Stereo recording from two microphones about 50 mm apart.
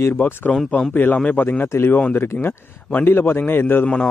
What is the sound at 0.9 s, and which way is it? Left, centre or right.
Speech, left.